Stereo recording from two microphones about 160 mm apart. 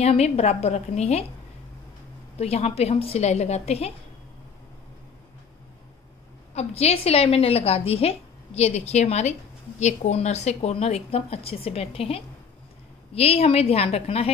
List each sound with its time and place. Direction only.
0.0 s a woman's voice: 40° left (ahead or behind)
2.3 s a woman's voice: 40° left (ahead or behind)
6.5 s a woman's voice: 40° left (ahead or behind)